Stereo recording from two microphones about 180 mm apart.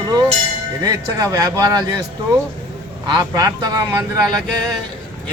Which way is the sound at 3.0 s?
25° right (ahead or behind).